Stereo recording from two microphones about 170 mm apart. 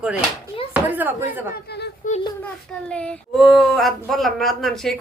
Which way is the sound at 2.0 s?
50° left (ahead or behind).